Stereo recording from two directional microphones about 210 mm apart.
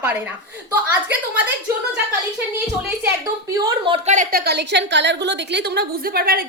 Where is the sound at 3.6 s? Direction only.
25° right (ahead or behind).